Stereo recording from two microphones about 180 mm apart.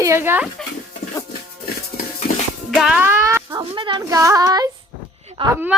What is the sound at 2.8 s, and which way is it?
Speech, 5° right (ahead or behind).